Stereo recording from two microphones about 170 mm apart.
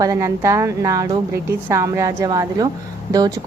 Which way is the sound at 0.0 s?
20° right (ahead or behind).